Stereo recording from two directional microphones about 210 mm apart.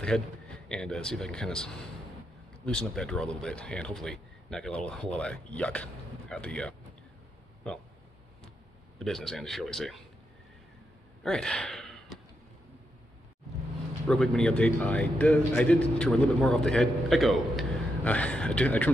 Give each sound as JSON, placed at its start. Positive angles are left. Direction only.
{"t": 0.0, "sound": "speech", "side_deg": 5}
{"t": 9.0, "sound": "speech", "side_deg": 0}
{"t": 11.2, "sound": "gasp", "side_deg": 5}
{"t": 14.0, "sound": "speech", "side_deg": 5}